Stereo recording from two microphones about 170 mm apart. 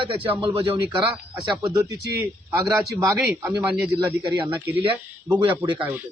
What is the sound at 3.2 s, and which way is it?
Speech, 5° right (ahead or behind).